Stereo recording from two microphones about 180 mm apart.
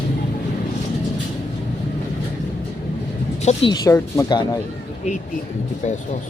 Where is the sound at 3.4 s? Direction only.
35° left (ahead or behind).